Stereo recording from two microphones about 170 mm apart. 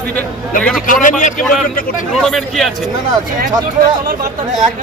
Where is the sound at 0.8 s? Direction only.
50° left (ahead or behind).